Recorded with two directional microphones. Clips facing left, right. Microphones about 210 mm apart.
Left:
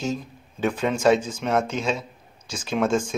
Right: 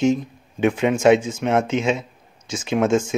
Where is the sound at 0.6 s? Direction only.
20° right (ahead or behind).